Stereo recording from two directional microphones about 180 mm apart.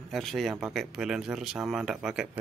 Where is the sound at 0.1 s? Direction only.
Centre (ahead or behind).